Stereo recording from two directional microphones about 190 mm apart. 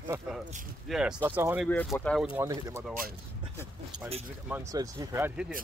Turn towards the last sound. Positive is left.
turn(degrees=-15)  # may be behind; listen again after turning